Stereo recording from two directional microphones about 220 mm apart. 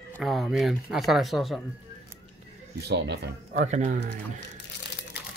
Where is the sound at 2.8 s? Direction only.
50° right (ahead or behind).